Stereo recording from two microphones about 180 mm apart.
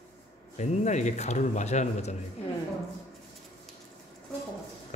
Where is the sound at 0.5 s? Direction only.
40° left (ahead or behind).